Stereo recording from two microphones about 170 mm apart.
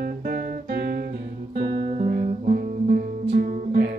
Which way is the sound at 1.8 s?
45° right (ahead or behind).